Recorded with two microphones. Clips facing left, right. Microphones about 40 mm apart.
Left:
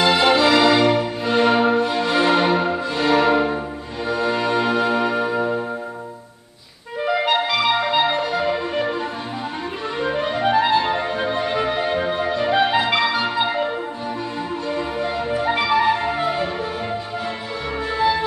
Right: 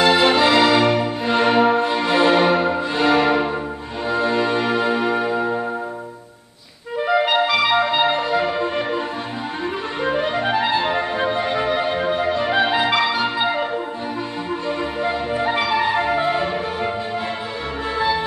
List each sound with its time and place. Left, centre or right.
0.1 s music: centre
1.8 s music: right
2.0 s music: centre
7.1 s clarinet: centre
7.8 s music: centre
9.9 s clarinet: centre
10.9 s music: centre
14.7 s music: centre